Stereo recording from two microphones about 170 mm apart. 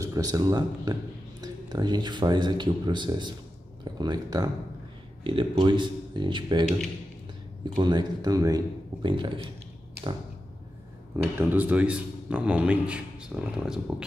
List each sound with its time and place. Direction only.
0.0 s speech: 20° right (ahead or behind)
7.8 s speech: 25° right (ahead or behind)
11.3 s a man's voice: 10° right (ahead or behind)